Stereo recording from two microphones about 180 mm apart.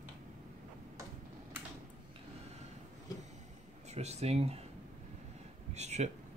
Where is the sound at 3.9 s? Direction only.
35° right (ahead or behind).